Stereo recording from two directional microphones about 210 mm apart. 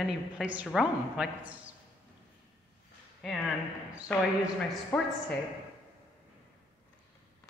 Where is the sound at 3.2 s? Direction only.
Centre (ahead or behind).